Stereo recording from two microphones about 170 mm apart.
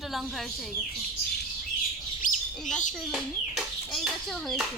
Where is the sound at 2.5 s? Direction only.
Centre (ahead or behind).